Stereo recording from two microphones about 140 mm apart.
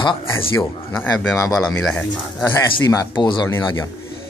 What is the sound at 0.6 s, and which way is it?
Speech, 15° left (ahead or behind).